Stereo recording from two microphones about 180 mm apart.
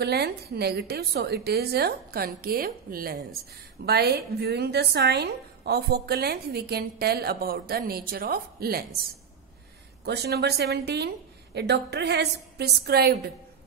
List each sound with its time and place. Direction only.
0.0 s a woman's voice: 65° right (ahead or behind)
10.0 s a woman's voice: 65° right (ahead or behind)